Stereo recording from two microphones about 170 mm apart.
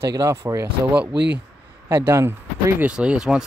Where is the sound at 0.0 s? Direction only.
20° right (ahead or behind).